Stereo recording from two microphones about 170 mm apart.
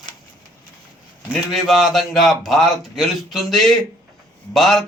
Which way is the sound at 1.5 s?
Centre (ahead or behind).